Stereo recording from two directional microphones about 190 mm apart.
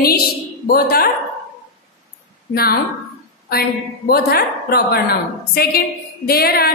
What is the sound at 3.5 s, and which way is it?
A woman's voice, 55° left (ahead or behind).